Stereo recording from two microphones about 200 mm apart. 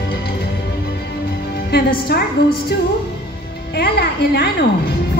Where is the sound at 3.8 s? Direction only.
55° left (ahead or behind).